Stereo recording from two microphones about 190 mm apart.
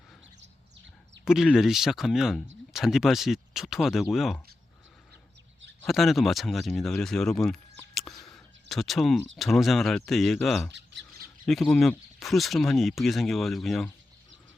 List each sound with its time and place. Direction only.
1.2 s speech: 5° right (ahead or behind)
5.8 s speech: centre (ahead or behind)
10.7 s bird: 65° right (ahead or behind)
11.4 s speech: centre (ahead or behind)